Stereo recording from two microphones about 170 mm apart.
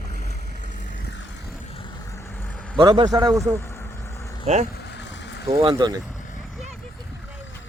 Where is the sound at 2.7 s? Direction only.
25° right (ahead or behind).